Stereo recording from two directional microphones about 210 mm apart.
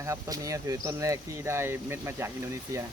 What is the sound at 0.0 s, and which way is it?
Speech, 15° right (ahead or behind).